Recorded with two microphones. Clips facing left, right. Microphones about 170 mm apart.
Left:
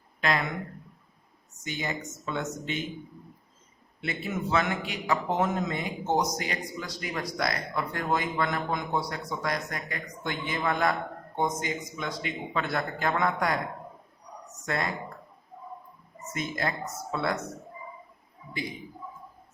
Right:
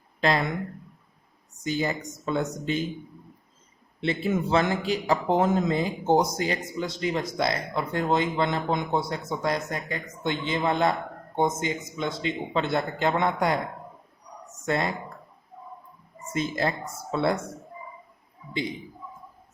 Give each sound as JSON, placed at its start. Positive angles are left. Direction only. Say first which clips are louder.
{"t": 0.2, "sound": "speech", "louder": "right 4 dB", "side_deg": -30}
{"t": 1.6, "sound": "speech", "louder": "right 6 dB", "side_deg": -35}
{"t": 4.0, "sound": "a man's voice", "louder": "right 6 dB", "side_deg": -30}
{"t": 16.2, "sound": "a man's voice", "louder": "right 5 dB", "side_deg": -30}